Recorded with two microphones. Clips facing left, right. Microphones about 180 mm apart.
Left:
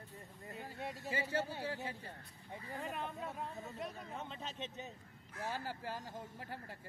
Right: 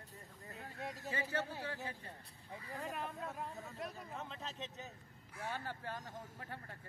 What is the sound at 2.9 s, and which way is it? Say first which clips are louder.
Speech: even; centre (ahead or behind).